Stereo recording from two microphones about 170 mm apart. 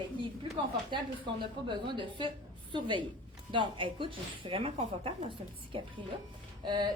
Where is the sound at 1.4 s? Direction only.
30° right (ahead or behind).